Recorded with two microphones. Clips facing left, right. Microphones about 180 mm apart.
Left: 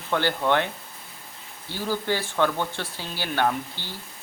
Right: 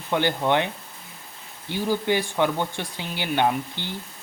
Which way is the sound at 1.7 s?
15° right (ahead or behind).